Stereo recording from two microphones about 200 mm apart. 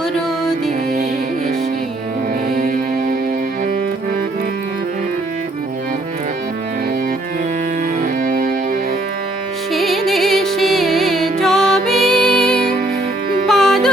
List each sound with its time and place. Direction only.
2.6 s music: 45° right (ahead or behind)
8.0 s music: 45° right (ahead or behind)
9.7 s music: centre (ahead or behind)